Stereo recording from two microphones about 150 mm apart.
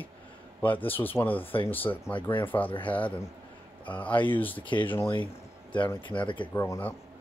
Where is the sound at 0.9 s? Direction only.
15° left (ahead or behind).